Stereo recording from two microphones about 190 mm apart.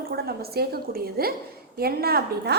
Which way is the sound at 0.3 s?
55° right (ahead or behind).